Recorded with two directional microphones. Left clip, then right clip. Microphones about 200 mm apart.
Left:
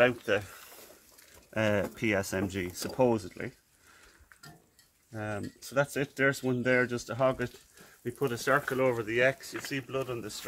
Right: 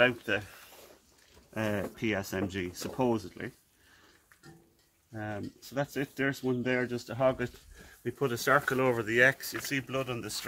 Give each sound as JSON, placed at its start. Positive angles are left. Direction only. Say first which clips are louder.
{"t": 0.0, "sound": "speech", "louder": "left 1 dB", "side_deg": 15}
{"t": 1.5, "sound": "speech", "louder": "left 5 dB", "side_deg": 45}
{"t": 5.1, "sound": "speech", "louder": "left 2 dB", "side_deg": 25}
{"t": 8.0, "sound": "speech", "louder": "right 1 dB", "side_deg": -35}